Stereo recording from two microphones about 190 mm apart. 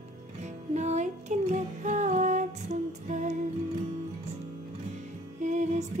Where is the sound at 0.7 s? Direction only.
35° right (ahead or behind).